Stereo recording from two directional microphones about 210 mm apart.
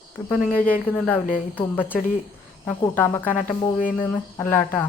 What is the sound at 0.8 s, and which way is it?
Speech, 5° left (ahead or behind).